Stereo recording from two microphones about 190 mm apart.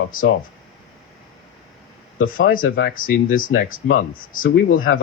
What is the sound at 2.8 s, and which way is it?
Speech, 45° left (ahead or behind).